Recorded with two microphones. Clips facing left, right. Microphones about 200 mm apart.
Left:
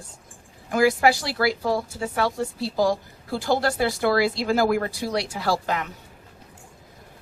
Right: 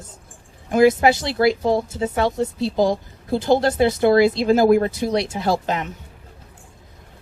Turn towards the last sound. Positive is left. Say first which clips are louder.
# right 3 dB
turn(degrees=-20)  # may be behind; listen again after turning